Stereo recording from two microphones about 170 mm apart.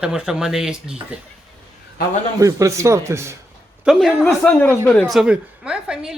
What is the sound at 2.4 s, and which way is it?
Speech, 15° right (ahead or behind).